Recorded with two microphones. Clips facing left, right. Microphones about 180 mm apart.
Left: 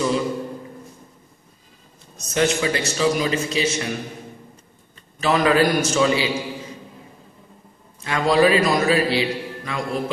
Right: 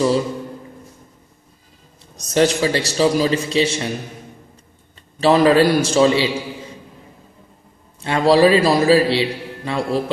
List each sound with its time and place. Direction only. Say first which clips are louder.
2.1 s a man's voice: right 4 dB; 35° right (ahead or behind)
5.2 s a man's voice: right 5 dB; 30° right (ahead or behind)
8.0 s a man's voice: right 4 dB; 30° right (ahead or behind)